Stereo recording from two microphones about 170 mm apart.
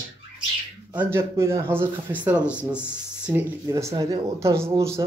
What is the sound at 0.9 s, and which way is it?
Speech, 10° right (ahead or behind).